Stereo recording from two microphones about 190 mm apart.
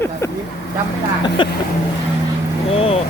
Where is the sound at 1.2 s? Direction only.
25° left (ahead or behind).